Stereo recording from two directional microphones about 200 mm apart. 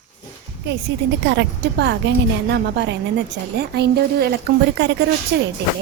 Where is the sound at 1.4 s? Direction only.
60° right (ahead or behind).